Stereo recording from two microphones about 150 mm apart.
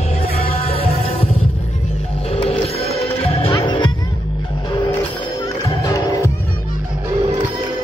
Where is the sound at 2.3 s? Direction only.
40° left (ahead or behind).